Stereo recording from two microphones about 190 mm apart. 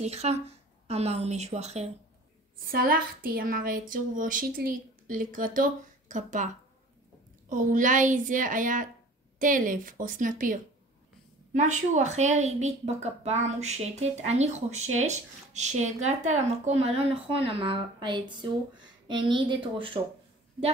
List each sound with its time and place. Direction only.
0.0 s a woman's voice: 35° right (ahead or behind)
2.5 s a woman's voice: 50° right (ahead or behind); by 20.0 s 25° right (ahead or behind)